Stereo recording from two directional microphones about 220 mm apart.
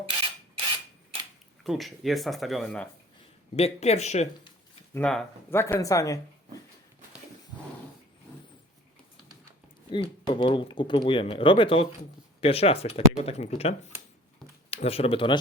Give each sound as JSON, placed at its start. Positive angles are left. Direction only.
{"t": 1.6, "sound": "speech", "side_deg": 0}
{"t": 3.5, "sound": "speech", "side_deg": 30}
{"t": 4.9, "sound": "speech", "side_deg": 5}
{"t": 9.9, "sound": "speech", "side_deg": 20}
{"t": 14.8, "sound": "speech", "side_deg": 25}